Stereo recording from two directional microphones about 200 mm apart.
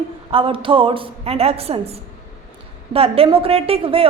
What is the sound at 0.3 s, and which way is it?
A woman's voice, 25° right (ahead or behind).